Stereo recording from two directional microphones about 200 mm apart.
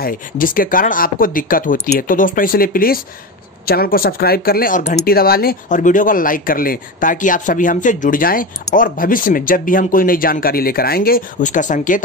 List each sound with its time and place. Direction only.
0.0 s speech: 45° left (ahead or behind)